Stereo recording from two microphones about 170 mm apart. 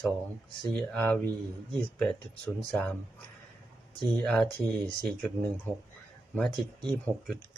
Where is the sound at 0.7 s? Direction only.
5° left (ahead or behind).